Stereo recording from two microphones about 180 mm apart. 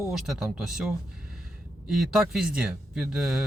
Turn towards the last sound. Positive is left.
turn(degrees=-5)  # may be behind; listen again after turning